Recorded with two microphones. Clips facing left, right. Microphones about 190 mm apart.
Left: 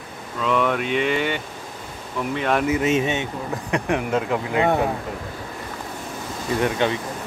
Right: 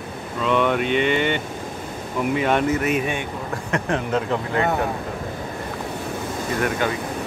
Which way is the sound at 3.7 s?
10° left (ahead or behind).